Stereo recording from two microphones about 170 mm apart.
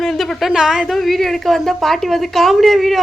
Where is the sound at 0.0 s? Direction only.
Centre (ahead or behind).